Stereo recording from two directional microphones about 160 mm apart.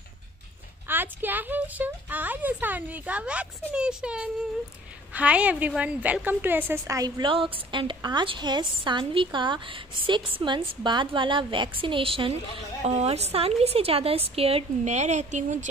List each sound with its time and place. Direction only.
0.8 s a woman's voice: 10° right (ahead or behind); by 15.6 s 45° right (ahead or behind)